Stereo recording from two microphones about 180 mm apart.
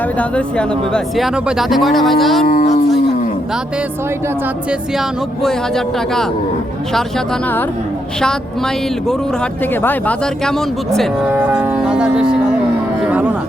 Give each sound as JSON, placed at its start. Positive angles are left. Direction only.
{"t": 0.2, "sound": "speech", "side_deg": 5}
{"t": 2.5, "sound": "speech", "side_deg": 50}
{"t": 4.7, "sound": "speech", "side_deg": 0}
{"t": 8.2, "sound": "speech", "side_deg": 5}
{"t": 11.3, "sound": "speech", "side_deg": -10}